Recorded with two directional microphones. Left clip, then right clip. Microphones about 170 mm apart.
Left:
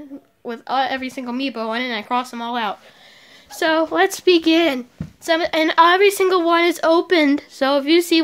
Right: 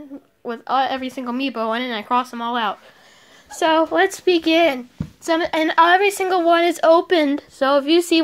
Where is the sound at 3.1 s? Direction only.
5° left (ahead or behind).